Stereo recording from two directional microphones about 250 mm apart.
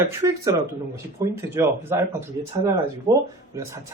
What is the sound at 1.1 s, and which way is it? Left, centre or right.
Speech, centre.